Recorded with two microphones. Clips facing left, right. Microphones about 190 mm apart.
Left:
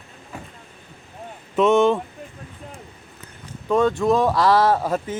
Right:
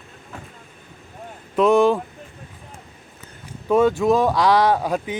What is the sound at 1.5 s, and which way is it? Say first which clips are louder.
Speech: right 1 dB; centre (ahead or behind).